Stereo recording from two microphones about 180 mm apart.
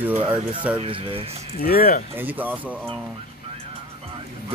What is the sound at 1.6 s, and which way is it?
Speech, 55° left (ahead or behind).